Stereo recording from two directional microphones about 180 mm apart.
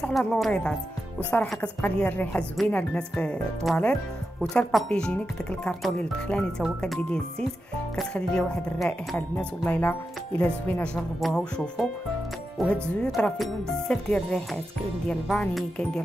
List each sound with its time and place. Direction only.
0.0 s speech: 5° left (ahead or behind)